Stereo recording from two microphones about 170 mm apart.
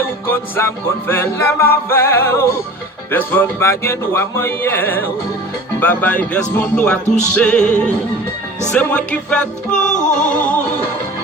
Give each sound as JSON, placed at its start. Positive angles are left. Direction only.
{"t": 0.3, "sound": "music", "side_deg": 15}
{"t": 9.9, "sound": "music", "side_deg": 45}